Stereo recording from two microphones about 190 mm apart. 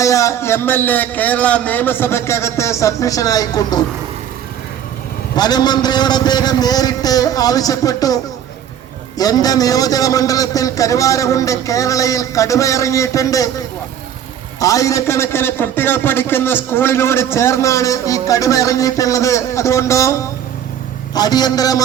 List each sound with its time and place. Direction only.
0.0 s a man's voice: 15° left (ahead or behind)
5.4 s a man's voice: 20° left (ahead or behind)
14.6 s a man's voice: 15° left (ahead or behind)